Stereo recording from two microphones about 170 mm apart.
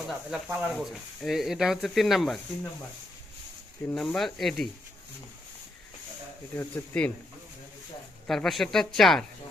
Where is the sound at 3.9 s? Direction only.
Centre (ahead or behind).